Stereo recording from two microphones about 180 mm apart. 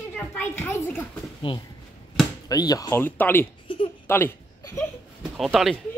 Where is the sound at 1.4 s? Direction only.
25° left (ahead or behind); by 3.5 s 10° left (ahead or behind).